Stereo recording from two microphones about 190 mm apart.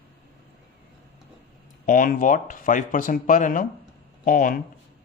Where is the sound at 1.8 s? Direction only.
45° left (ahead or behind).